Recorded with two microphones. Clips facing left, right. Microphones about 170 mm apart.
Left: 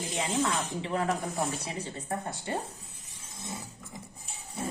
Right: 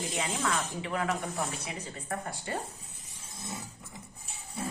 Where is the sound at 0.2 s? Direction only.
30° left (ahead or behind).